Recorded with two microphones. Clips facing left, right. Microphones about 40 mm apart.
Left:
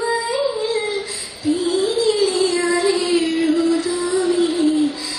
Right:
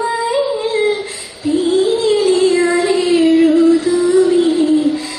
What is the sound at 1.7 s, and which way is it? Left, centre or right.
Child singing, right.